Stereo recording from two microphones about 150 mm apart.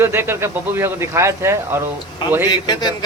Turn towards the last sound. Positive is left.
turn(degrees=30)  # may be behind; listen again after turning